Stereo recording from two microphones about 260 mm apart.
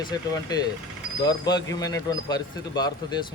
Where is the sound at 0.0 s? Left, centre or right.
Centre.